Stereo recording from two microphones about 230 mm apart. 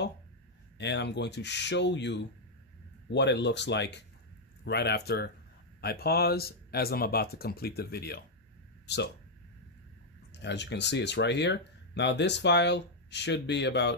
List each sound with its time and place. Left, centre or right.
0.7 s speech: left
10.4 s speech: left